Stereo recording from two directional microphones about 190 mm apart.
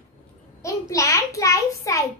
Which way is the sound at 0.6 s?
15° left (ahead or behind).